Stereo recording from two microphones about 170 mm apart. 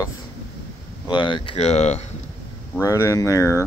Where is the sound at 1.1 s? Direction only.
30° left (ahead or behind).